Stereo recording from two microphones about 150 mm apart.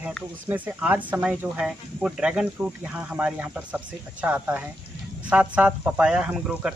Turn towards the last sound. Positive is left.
turn(degrees=-5)  # may be behind; listen again after turning